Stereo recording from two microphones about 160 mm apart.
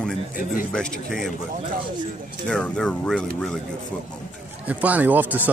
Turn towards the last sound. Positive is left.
turn(degrees=-10)  # may be behind; listen again after turning